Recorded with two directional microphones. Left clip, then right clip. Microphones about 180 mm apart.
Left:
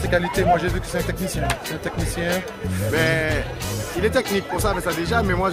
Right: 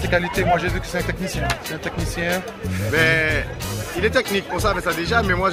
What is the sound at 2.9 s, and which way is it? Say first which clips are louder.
Speech: right 3 dB; 20° left (ahead or behind).